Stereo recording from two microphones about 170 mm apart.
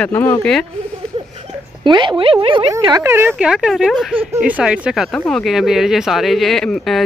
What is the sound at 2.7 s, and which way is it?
Speech, 20° right (ahead or behind).